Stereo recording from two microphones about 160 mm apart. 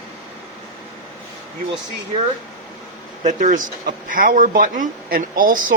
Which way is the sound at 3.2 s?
50° right (ahead or behind).